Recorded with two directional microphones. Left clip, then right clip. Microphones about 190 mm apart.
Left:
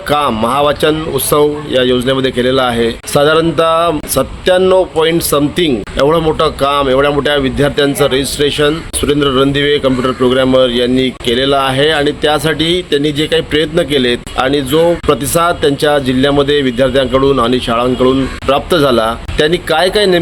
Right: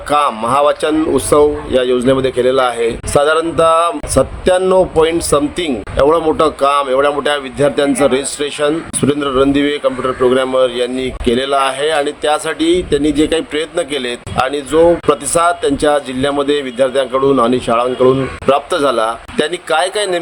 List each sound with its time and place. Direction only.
0.1 s speech: 10° right (ahead or behind)